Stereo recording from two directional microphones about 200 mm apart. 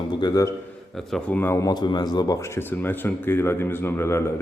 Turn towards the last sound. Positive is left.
turn(degrees=15)  # may be behind; listen again after turning